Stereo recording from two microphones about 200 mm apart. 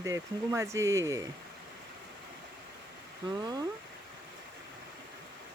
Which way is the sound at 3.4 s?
20° right (ahead or behind).